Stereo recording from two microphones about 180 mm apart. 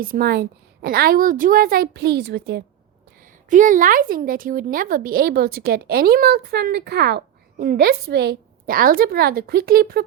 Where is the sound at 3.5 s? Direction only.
45° right (ahead or behind).